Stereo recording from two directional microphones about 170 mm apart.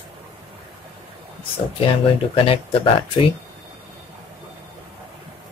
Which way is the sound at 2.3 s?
30° left (ahead or behind).